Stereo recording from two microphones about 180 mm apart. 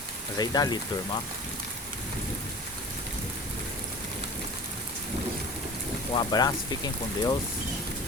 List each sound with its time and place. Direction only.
0.3 s speech: 20° left (ahead or behind)
6.1 s speech: 25° left (ahead or behind)